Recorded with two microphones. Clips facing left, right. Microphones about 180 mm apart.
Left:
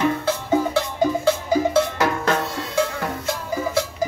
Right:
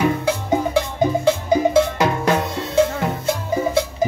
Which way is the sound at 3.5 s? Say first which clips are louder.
Right 3 dB; 20° right (ahead or behind).